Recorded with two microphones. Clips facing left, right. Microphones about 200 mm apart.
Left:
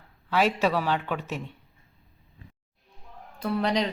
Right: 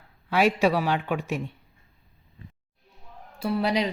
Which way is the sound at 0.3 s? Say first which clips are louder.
Right 2 dB; 15° right (ahead or behind).